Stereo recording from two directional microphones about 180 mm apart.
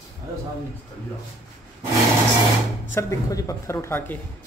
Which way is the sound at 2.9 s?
15° left (ahead or behind).